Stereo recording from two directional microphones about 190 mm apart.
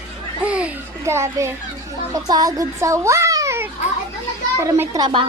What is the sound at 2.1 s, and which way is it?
A child's voice, 20° right (ahead or behind).